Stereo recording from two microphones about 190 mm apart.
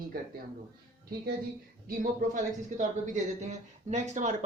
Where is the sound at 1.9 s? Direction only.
45° right (ahead or behind).